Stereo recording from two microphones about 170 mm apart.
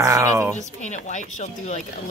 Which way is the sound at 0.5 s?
45° left (ahead or behind).